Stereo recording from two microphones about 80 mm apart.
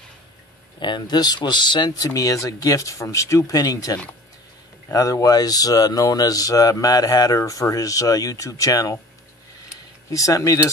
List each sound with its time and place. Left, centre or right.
0.7 s speech: left
1.9 s speech: left
10.1 s speech: left